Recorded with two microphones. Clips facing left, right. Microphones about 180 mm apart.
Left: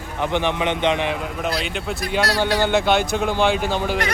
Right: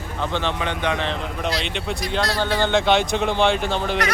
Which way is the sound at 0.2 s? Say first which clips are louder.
Left 3 dB; 15° left (ahead or behind).